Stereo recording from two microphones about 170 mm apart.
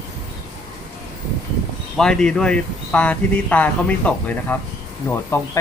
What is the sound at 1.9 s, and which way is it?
Speech, 5° left (ahead or behind).